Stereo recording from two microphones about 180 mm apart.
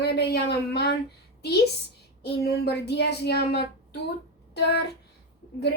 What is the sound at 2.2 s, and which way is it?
Speech, 65° left (ahead or behind).